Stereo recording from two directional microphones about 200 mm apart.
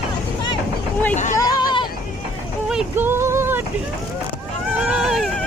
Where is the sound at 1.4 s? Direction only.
20° left (ahead or behind).